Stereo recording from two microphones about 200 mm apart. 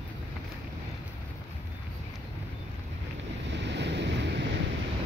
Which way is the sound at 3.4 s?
60° right (ahead or behind).